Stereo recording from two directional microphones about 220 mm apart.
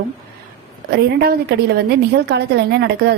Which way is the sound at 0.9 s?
45° right (ahead or behind).